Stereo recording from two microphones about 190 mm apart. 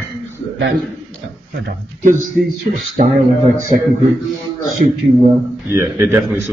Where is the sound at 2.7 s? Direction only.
40° right (ahead or behind).